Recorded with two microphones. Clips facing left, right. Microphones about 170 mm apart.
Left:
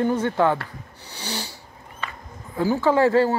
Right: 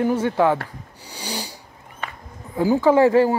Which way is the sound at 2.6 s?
15° right (ahead or behind).